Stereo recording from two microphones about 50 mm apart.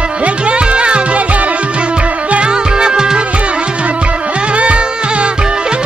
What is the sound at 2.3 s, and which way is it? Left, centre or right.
Music, centre.